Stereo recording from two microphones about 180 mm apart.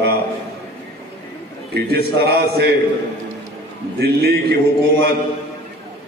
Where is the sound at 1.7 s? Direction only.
65° right (ahead or behind).